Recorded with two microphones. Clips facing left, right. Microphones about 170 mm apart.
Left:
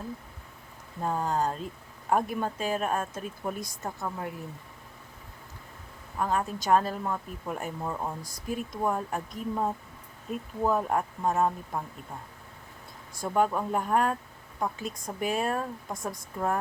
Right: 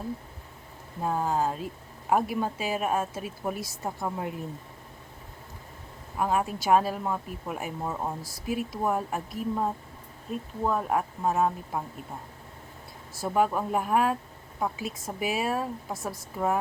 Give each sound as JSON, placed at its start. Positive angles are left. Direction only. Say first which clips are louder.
{"t": 1.0, "sound": "a woman's voice", "louder": "right 1 dB", "side_deg": -5}
{"t": 4.0, "sound": "speech", "louder": "right 3 dB", "side_deg": -20}
{"t": 6.1, "sound": "a woman's voice", "louder": "right 2 dB", "side_deg": -10}
{"t": 10.6, "sound": "a woman's voice", "louder": "left 1 dB", "side_deg": 0}
{"t": 13.1, "sound": "a woman's voice", "louder": "right 1 dB", "side_deg": -5}